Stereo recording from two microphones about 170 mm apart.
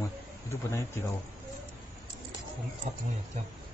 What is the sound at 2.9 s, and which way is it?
Speech, 40° right (ahead or behind).